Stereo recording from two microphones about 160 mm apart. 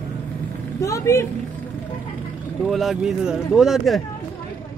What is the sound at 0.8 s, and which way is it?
Speech, 20° left (ahead or behind).